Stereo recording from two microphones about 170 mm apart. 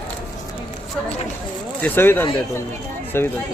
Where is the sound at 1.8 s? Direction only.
15° left (ahead or behind).